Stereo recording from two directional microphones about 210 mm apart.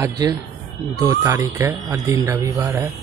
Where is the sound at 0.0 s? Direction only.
20° right (ahead or behind).